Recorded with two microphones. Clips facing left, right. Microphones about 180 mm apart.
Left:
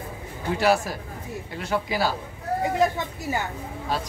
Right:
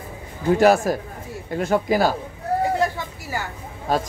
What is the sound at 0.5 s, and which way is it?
A man's voice, 45° right (ahead or behind).